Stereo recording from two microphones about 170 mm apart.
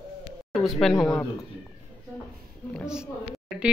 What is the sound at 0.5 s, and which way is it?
Speech, centre (ahead or behind).